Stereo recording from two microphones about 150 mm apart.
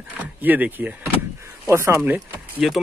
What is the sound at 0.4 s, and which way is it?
Speech, 10° right (ahead or behind).